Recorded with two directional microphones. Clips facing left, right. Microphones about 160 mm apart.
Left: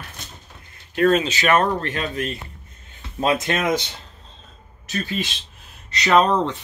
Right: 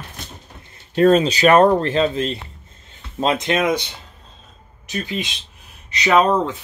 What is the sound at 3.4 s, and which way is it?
Speech, 20° right (ahead or behind).